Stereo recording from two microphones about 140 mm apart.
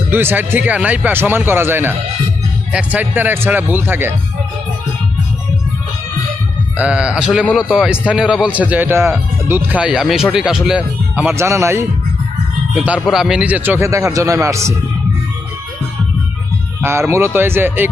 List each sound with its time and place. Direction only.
0.1 s speech: 15° right (ahead or behind)
6.7 s speech: 10° right (ahead or behind)
11.3 s a man's voice: 20° right (ahead or behind)
12.7 s a man's voice: 5° right (ahead or behind)
16.8 s speech: 20° right (ahead or behind)